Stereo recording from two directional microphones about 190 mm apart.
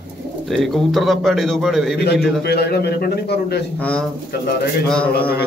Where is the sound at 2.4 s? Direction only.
55° left (ahead or behind).